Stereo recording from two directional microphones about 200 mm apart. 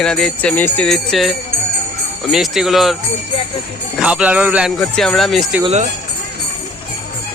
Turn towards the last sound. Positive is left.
turn(degrees=-35)  # may be behind; listen again after turning